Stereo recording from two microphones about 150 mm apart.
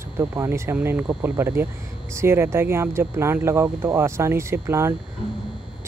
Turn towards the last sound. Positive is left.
turn(degrees=-15)  # may be behind; listen again after turning